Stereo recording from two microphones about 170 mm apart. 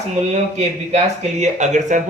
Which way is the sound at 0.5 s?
40° right (ahead or behind).